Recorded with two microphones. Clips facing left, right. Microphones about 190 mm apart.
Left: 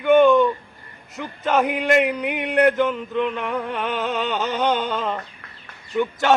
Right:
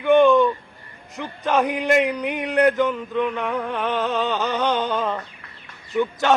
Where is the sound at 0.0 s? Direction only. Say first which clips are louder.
Even; centre (ahead or behind).